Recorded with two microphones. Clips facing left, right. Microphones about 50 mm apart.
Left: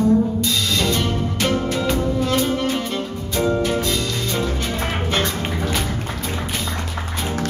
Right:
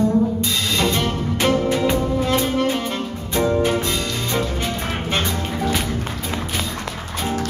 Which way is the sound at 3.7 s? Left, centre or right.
Centre.